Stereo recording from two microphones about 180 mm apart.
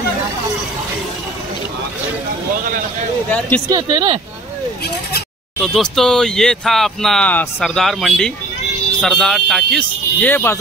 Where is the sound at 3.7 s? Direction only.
25° right (ahead or behind).